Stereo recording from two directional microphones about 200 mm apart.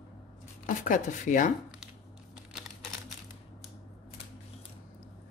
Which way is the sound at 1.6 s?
5° right (ahead or behind).